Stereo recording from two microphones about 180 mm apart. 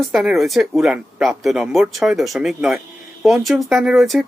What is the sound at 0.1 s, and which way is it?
Speech, centre (ahead or behind).